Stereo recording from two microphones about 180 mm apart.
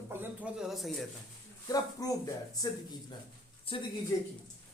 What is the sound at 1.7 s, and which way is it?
Speech, 20° left (ahead or behind).